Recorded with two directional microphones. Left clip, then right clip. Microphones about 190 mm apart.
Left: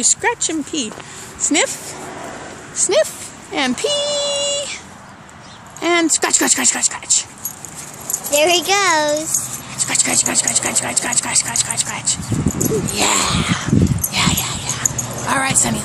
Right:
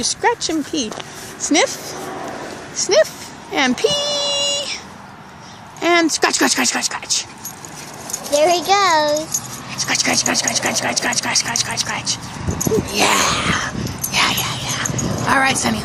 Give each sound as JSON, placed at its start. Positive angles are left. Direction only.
{"t": 0.0, "sound": "speech", "side_deg": 10}
{"t": 1.5, "sound": "a sound", "side_deg": 5}
{"t": 2.7, "sound": "speech", "side_deg": 15}
{"t": 3.5, "sound": "child singing", "side_deg": 10}
{"t": 5.8, "sound": "a sound", "side_deg": 5}
{"t": 6.2, "sound": "speech", "side_deg": 5}
{"t": 8.3, "sound": "a child's voice", "side_deg": 30}
{"t": 9.8, "sound": "speech", "side_deg": 5}
{"t": 12.9, "sound": "dog", "side_deg": 5}